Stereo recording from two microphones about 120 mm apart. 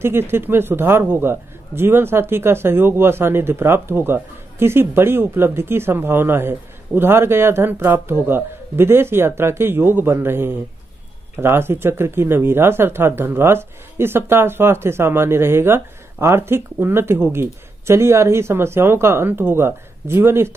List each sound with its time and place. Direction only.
0.0 s speech: 20° right (ahead or behind)